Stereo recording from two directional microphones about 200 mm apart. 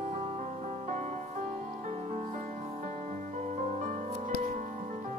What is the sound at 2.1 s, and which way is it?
Music, 35° right (ahead or behind).